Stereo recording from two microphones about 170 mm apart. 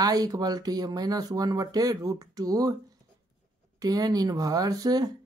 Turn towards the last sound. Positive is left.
turn(degrees=-25)  # may be behind; listen again after turning